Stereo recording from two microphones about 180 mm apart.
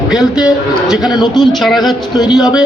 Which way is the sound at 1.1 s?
25° left (ahead or behind).